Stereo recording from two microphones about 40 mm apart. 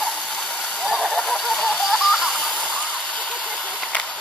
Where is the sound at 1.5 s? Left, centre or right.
Centre.